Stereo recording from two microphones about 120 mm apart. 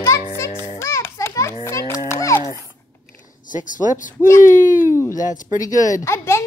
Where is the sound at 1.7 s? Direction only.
25° left (ahead or behind).